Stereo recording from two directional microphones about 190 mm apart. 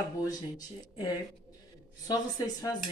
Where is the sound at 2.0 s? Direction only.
20° left (ahead or behind).